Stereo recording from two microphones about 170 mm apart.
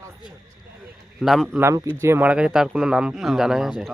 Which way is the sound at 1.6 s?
20° right (ahead or behind).